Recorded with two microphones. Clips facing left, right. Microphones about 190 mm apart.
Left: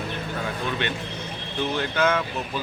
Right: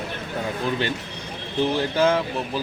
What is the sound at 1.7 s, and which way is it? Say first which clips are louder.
Speech: right 2 dB; 35° right (ahead or behind).